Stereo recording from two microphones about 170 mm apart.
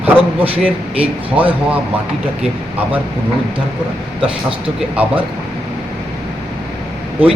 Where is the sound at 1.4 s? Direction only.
10° right (ahead or behind).